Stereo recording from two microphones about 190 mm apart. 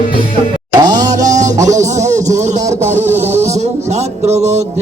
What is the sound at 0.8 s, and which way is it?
Music, 20° right (ahead or behind).